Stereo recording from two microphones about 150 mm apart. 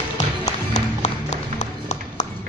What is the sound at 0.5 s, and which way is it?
Music, 50° left (ahead or behind).